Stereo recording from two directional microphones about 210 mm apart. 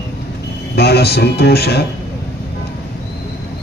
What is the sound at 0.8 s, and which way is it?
A man's voice, 50° left (ahead or behind).